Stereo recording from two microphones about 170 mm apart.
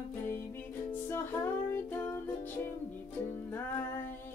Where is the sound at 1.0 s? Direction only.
10° left (ahead or behind).